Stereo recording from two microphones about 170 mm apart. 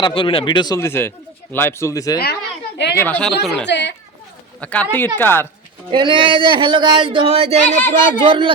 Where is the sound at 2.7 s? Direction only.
75° left (ahead or behind).